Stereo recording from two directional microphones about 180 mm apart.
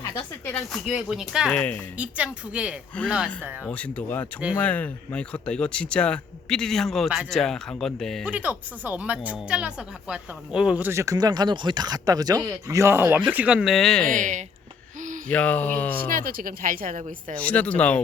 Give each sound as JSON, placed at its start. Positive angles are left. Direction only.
{"t": 0.0, "sound": "a sound", "side_deg": 10}
{"t": 0.7, "sound": "a woman's voice", "side_deg": 0}
{"t": 3.7, "sound": "speech", "side_deg": 10}
{"t": 8.3, "sound": "a woman's voice", "side_deg": -10}
{"t": 14.1, "sound": "speech", "side_deg": -45}
{"t": 15.3, "sound": "speech", "side_deg": 10}
{"t": 16.0, "sound": "speech", "side_deg": -50}
{"t": 17.4, "sound": "speech", "side_deg": 10}